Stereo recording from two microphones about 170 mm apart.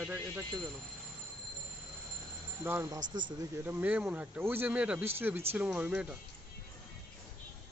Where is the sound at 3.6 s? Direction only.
10° right (ahead or behind).